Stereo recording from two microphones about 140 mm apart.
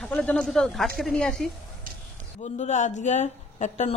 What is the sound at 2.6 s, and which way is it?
A woman's voice, 60° left (ahead or behind).